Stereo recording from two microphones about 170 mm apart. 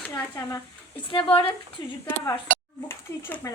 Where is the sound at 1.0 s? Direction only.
30° left (ahead or behind).